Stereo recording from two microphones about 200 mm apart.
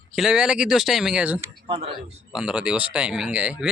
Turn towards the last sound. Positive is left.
turn(degrees=-5)  # may be behind; listen again after turning